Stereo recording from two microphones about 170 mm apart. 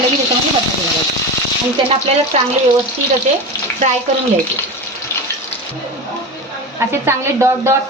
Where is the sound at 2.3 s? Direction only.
40° right (ahead or behind).